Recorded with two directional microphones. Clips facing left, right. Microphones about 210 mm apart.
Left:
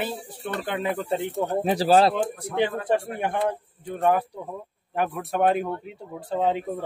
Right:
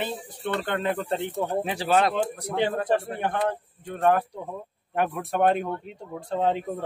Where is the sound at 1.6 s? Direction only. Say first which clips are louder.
Left 5 dB; 35° left (ahead or behind).